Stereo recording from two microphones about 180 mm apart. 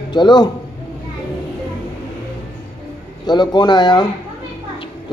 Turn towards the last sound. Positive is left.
turn(degrees=25)  # may be behind; listen again after turning